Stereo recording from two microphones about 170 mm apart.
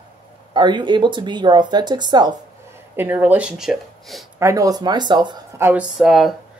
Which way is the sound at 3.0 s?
10° right (ahead or behind).